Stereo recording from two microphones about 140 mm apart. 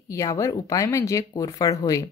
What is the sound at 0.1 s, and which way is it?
Speech, 20° left (ahead or behind).